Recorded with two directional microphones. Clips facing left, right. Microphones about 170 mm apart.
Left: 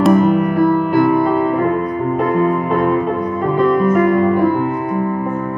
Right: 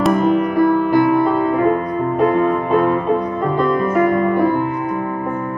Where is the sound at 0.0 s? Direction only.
5° left (ahead or behind).